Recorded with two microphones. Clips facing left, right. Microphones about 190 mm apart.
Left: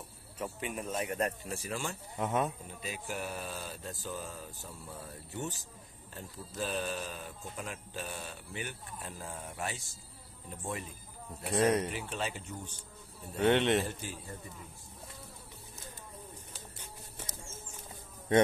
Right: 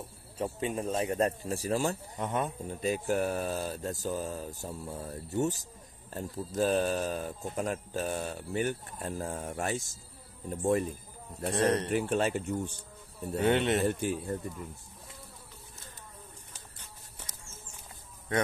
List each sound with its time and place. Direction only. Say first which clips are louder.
0.4 s speech: right 6 dB; 30° right (ahead or behind)
2.1 s speech: even; centre (ahead or behind)
2.7 s speech: right 11 dB; 45° right (ahead or behind)
11.5 s speech: even; 10° left (ahead or behind)
11.9 s speech: right 10 dB; 55° right (ahead or behind)
13.5 s speech: even; centre (ahead or behind)
13.8 s a man's voice: right 11 dB; 60° right (ahead or behind)